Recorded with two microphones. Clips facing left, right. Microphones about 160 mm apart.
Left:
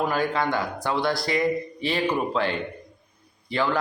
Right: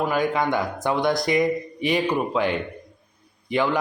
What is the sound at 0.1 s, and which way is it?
A man's voice, 15° right (ahead or behind).